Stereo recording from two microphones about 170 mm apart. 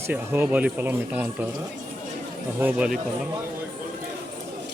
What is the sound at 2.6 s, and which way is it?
Speech, 10° right (ahead or behind).